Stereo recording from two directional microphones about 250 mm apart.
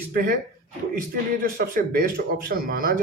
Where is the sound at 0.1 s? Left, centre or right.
Right.